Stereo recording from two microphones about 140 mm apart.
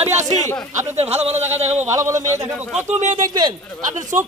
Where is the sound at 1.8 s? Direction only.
20° right (ahead or behind).